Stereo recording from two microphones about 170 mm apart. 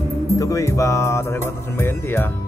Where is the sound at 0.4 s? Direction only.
20° left (ahead or behind).